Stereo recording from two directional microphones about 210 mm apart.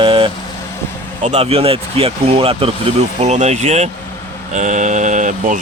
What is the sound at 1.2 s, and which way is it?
Speech, 30° right (ahead or behind).